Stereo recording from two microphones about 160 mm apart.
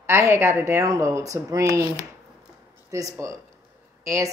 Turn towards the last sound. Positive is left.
turn(degrees=-20)  # may be behind; listen again after turning